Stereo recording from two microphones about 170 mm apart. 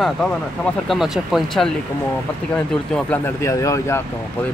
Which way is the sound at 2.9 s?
10° left (ahead or behind).